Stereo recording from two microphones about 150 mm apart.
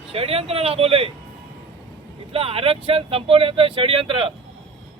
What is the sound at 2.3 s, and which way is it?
Speech, 40° right (ahead or behind).